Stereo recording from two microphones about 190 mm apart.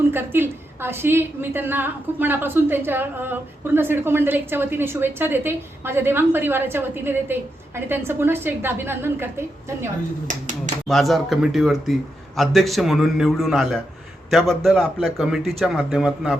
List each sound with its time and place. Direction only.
0.1 s a woman's voice: 10° right (ahead or behind)
10.8 s a man's voice: centre (ahead or behind)